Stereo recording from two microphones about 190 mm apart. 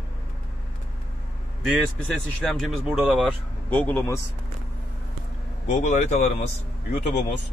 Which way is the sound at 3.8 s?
10° left (ahead or behind).